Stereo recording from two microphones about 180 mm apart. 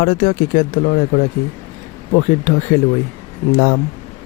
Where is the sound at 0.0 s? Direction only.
45° left (ahead or behind).